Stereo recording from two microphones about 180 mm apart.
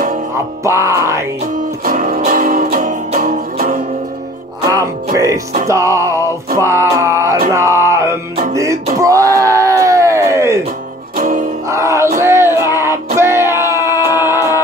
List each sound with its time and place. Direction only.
0.7 s music: 15° right (ahead or behind)
1.9 s music: 50° right (ahead or behind)
4.6 s music: 20° right (ahead or behind)
9.0 s a sound: 20° right (ahead or behind)
11.1 s music: 50° right (ahead or behind)
11.7 s music: 15° right (ahead or behind)